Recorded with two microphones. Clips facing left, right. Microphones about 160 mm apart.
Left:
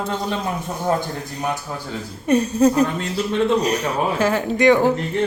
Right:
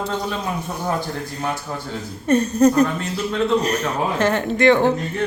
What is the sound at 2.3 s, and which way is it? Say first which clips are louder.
Speech: right 1 dB; 10° left (ahead or behind).